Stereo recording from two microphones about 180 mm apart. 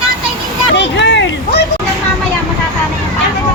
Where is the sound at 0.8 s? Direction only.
75° left (ahead or behind).